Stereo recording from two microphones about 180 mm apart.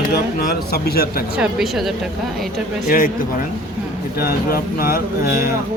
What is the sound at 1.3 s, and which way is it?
Speech, 5° right (ahead or behind).